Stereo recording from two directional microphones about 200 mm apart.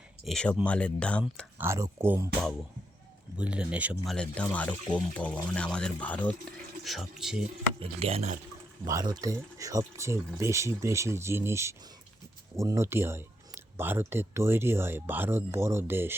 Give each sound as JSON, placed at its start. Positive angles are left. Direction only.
{"t": 0.3, "sound": "speech", "side_deg": 5}
{"t": 1.2, "sound": "speech", "side_deg": -5}
{"t": 3.3, "sound": "speech", "side_deg": -5}
{"t": 7.8, "sound": "speech", "side_deg": -30}
{"t": 8.9, "sound": "speech", "side_deg": -15}